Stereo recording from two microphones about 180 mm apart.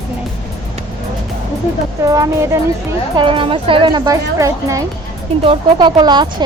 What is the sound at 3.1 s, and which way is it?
A woman's voice, 30° right (ahead or behind).